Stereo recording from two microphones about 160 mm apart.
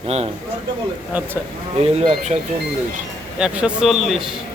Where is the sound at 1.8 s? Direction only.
40° right (ahead or behind).